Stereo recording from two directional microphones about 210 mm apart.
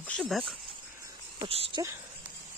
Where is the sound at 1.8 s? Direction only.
15° right (ahead or behind).